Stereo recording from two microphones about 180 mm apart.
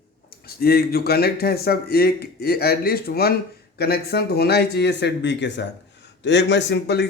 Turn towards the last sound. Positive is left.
turn(degrees=70)  # may be behind; listen again after turning